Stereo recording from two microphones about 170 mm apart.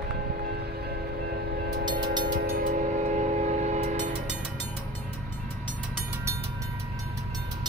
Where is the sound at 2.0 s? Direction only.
25° right (ahead or behind).